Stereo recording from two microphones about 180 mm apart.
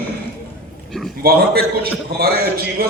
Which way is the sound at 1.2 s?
55° right (ahead or behind).